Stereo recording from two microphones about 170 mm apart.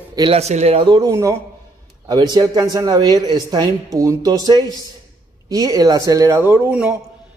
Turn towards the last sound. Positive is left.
turn(degrees=-10)  # may be behind; listen again after turning